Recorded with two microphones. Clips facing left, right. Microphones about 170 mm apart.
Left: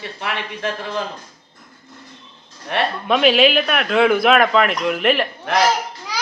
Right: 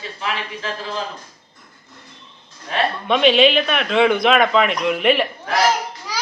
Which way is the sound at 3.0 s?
5° left (ahead or behind).